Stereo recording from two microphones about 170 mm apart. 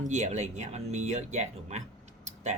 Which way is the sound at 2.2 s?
45° right (ahead or behind).